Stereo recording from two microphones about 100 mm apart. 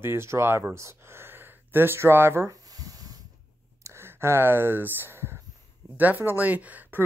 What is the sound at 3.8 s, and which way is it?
Speech, 25° right (ahead or behind).